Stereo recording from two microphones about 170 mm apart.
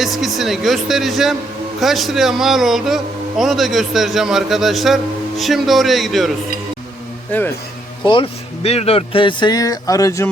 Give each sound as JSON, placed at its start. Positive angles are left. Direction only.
{"t": 0.0, "sound": "speech", "side_deg": 0}
{"t": 7.3, "sound": "a man's voice", "side_deg": 10}
{"t": 8.0, "sound": "speech", "side_deg": 30}